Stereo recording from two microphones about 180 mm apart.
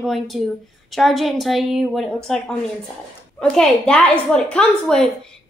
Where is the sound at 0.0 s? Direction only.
Centre (ahead or behind).